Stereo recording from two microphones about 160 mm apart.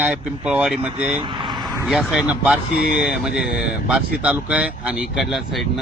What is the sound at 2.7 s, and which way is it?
Speech, 80° left.